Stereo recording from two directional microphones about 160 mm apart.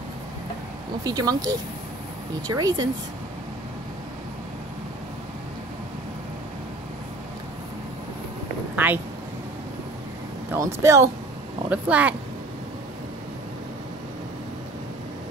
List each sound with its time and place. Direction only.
1.0 s speech: 25° right (ahead or behind)
8.7 s a sound: 10° right (ahead or behind)
10.5 s speech: 20° right (ahead or behind)